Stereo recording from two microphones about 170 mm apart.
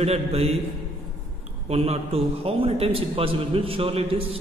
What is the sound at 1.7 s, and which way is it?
A man's voice, 35° right (ahead or behind).